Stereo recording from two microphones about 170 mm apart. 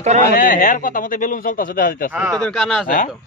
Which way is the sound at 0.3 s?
55° left (ahead or behind).